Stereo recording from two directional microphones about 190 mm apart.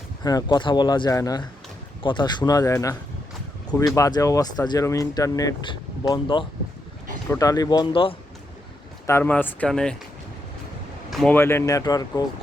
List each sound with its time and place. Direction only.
0.2 s speech: 20° left (ahead or behind)
9.0 s speech: 10° left (ahead or behind)
11.1 s speech: centre (ahead or behind)
11.3 s speech: 15° left (ahead or behind)